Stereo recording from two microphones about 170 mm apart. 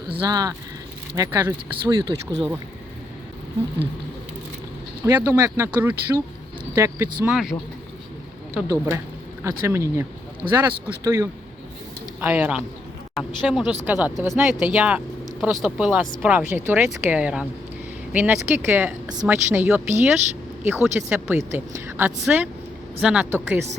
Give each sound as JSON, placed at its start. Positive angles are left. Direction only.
{"t": 0.2, "sound": "speech", "side_deg": -20}
{"t": 5.0, "sound": "speech", "side_deg": -15}
{"t": 7.3, "sound": "speech", "side_deg": 0}
{"t": 8.5, "sound": "speech", "side_deg": -15}